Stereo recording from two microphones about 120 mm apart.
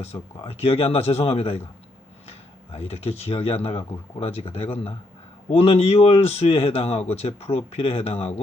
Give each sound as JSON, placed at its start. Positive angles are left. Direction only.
{"t": 0.0, "sound": "speech", "side_deg": 60}
{"t": 2.7, "sound": "speech", "side_deg": 55}